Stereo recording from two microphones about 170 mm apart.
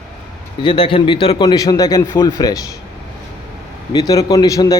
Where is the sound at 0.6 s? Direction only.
30° left (ahead or behind).